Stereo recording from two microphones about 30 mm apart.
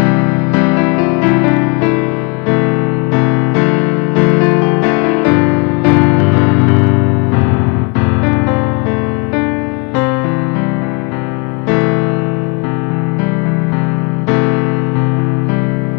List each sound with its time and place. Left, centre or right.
0.0 s music: centre
3.2 s music: centre
11.7 s music: left